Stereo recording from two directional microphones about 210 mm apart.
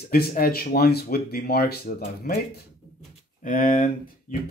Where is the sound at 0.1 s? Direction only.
45° left (ahead or behind).